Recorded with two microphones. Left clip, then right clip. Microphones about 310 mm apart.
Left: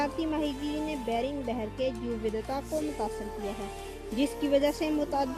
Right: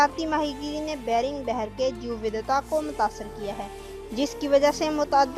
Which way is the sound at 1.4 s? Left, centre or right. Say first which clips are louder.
Right 6 dB; right.